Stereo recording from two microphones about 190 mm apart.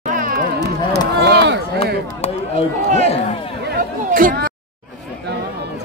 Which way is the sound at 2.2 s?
35° left (ahead or behind).